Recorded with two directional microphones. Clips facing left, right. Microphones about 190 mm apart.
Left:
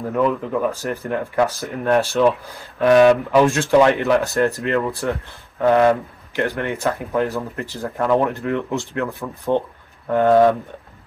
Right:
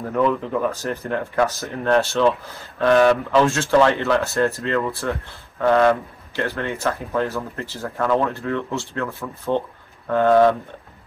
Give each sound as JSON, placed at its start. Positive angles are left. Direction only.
{"t": 0.1, "sound": "speech", "side_deg": 5}